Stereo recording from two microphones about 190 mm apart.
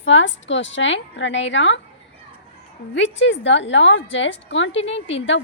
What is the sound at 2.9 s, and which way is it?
A woman's voice, 75° left (ahead or behind).